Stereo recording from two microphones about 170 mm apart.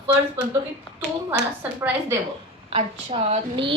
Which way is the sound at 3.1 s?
35° right (ahead or behind).